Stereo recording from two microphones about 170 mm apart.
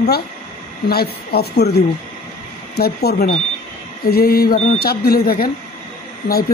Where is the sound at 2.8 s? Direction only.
70° left (ahead or behind).